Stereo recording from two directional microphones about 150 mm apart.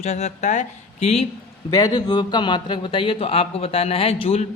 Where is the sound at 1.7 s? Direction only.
25° left (ahead or behind).